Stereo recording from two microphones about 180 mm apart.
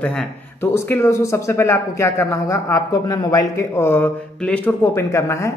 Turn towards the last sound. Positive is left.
turn(degrees=15)  # may be behind; listen again after turning